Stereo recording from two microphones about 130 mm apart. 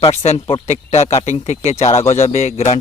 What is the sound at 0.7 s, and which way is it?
Speech, 55° left (ahead or behind).